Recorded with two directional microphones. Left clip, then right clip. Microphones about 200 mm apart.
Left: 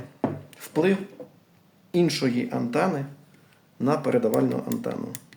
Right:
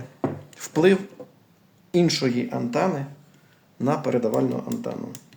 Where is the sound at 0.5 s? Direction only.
20° right (ahead or behind).